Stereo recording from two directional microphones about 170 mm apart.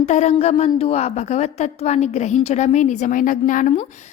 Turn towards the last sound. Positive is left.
turn(degrees=50)  # may be behind; listen again after turning